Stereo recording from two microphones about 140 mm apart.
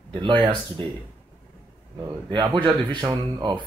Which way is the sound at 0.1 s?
35° right (ahead or behind).